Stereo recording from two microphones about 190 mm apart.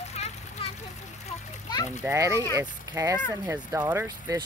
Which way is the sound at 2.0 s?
15° right (ahead or behind).